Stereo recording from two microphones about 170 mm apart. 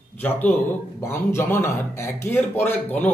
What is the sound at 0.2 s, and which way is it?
Speech, 10° left (ahead or behind).